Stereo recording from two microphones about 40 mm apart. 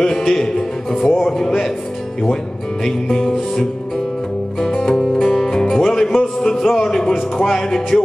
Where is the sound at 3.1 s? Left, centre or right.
Centre.